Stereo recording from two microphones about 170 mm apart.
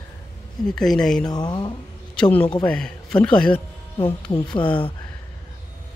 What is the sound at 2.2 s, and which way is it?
A man's voice, 5° left (ahead or behind).